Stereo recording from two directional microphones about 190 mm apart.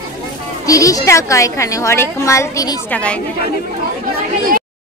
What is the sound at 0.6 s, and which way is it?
A woman's voice, 15° left (ahead or behind).